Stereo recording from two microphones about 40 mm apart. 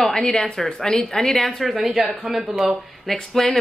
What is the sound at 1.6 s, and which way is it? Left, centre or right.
A woman's voice, centre.